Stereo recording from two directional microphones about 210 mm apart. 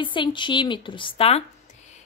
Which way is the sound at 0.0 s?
25° left (ahead or behind).